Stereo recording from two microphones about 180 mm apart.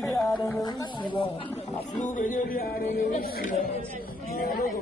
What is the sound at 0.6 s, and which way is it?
Speech, 25° left (ahead or behind).